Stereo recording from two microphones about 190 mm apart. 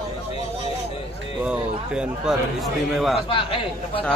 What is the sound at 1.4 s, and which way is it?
A man's voice, 5° right (ahead or behind).